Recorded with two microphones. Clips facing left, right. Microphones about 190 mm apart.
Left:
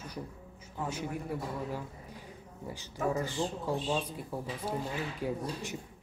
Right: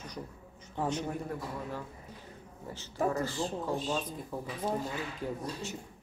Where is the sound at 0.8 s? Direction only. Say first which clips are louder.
Right 2 dB; 10° left (ahead or behind).